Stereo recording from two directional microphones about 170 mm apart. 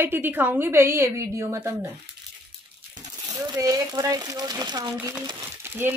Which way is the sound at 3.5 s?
20° right (ahead or behind).